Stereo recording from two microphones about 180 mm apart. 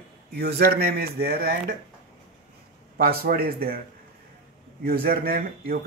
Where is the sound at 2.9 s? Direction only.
55° right (ahead or behind).